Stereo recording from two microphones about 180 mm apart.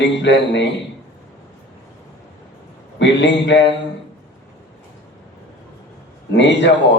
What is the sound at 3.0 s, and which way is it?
Speech, 75° left (ahead or behind).